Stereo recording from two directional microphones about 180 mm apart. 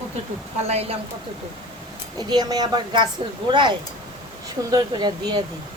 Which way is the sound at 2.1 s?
20° right (ahead or behind).